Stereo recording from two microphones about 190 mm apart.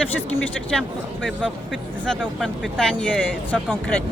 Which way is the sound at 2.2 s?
Centre (ahead or behind).